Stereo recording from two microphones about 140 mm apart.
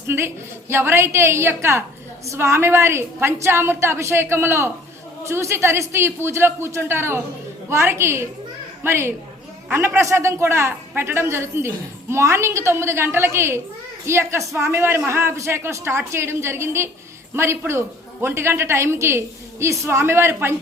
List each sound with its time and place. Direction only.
0.1 s a woman's voice: 15° right (ahead or behind)